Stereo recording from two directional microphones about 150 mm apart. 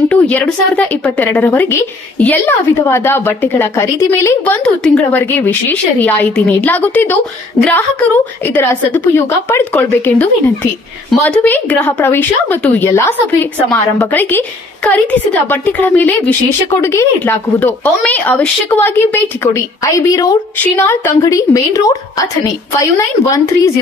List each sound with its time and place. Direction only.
0.1 s a woman's voice: 10° left (ahead or behind)
4.6 s a woman's voice: 5° left (ahead or behind); by 21.9 s 20° left (ahead or behind)
23.3 s a woman's voice: 20° left (ahead or behind)